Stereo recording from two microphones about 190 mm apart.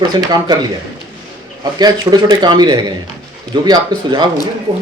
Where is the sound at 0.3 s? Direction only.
20° right (ahead or behind).